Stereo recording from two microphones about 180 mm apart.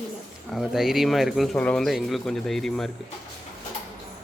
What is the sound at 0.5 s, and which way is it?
Speech, centre (ahead or behind).